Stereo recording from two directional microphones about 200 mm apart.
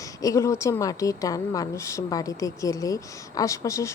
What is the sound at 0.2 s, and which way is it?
A woman's voice, 15° left (ahead or behind).